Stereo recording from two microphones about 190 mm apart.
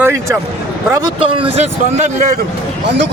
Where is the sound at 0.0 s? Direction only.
15° right (ahead or behind).